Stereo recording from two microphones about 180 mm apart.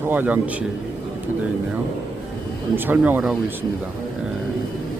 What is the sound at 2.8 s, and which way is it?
Speech, 10° right (ahead or behind).